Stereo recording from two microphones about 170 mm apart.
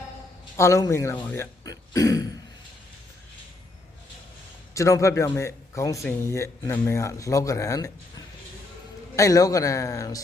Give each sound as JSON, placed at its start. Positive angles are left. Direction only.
{"t": 0.5, "sound": "speech", "side_deg": 15}
{"t": 4.7, "sound": "speech", "side_deg": 20}
{"t": 9.1, "sound": "a man's voice", "side_deg": 20}